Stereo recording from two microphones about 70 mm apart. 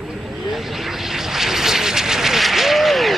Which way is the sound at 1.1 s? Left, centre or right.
Centre.